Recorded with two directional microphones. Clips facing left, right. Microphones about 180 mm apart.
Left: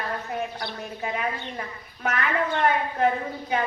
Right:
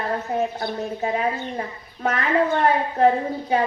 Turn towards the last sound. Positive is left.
turn(degrees=-30)  # may be behind; listen again after turning